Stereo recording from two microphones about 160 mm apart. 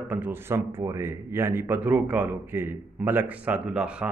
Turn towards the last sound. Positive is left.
turn(degrees=-5)  # may be behind; listen again after turning